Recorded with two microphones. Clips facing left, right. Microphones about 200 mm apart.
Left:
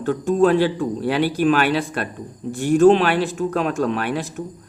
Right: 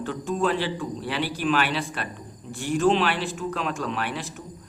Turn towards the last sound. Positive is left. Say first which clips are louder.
# left 8 dB
turn(degrees=45)  # may be behind; listen again after turning